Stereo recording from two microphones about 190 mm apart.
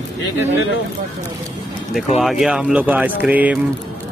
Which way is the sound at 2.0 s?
Centre (ahead or behind).